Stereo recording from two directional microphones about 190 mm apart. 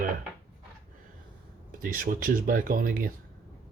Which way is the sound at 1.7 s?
45° right (ahead or behind).